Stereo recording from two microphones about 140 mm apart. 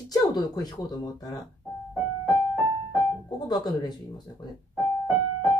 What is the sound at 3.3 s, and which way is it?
Speech, 30° left (ahead or behind).